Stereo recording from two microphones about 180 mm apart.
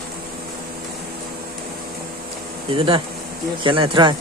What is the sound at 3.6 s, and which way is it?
Speech, 30° right (ahead or behind).